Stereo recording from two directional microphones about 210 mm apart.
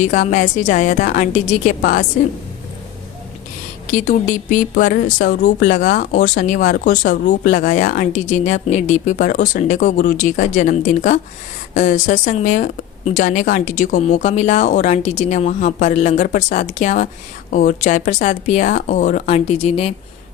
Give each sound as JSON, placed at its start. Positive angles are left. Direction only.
{"t": 0.1, "sound": "speech", "side_deg": 35}
{"t": 3.8, "sound": "speech", "side_deg": 40}